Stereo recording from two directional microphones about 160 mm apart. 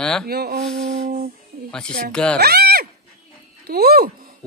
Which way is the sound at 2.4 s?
90° right.